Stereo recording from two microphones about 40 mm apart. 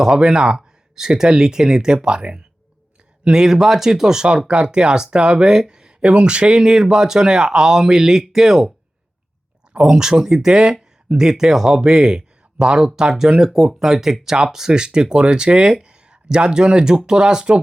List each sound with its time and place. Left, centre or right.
0.0 s speech: right
9.8 s speech: centre